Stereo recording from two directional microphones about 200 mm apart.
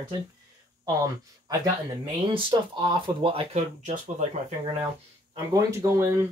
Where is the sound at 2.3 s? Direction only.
25° right (ahead or behind).